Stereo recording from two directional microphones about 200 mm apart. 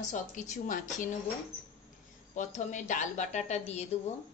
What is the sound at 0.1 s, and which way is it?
Speech, 40° left (ahead or behind).